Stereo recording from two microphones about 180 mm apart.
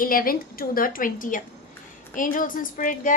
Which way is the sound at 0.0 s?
50° left (ahead or behind).